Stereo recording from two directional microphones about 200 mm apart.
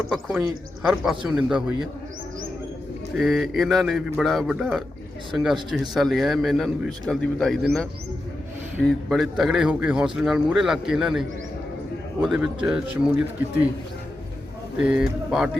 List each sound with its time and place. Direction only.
0.1 s a man's voice: 5° right (ahead or behind)
3.2 s a man's voice: centre (ahead or behind)
8.8 s a man's voice: centre (ahead or behind)
14.8 s a man's voice: 5° right (ahead or behind)